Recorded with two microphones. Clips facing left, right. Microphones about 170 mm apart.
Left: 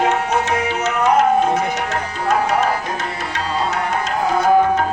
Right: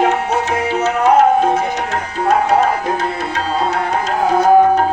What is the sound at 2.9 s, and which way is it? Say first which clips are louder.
Music: right 5 dB; 30° right (ahead or behind).